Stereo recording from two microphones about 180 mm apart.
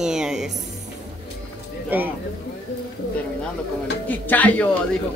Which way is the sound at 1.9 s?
10° right (ahead or behind).